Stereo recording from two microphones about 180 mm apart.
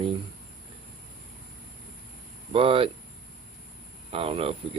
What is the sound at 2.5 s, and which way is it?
Speech, 30° right (ahead or behind).